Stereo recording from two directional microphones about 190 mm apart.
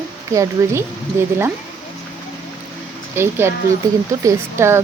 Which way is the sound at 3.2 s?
15° right (ahead or behind).